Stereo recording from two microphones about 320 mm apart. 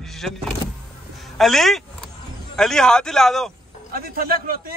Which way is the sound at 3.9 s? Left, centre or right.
Right.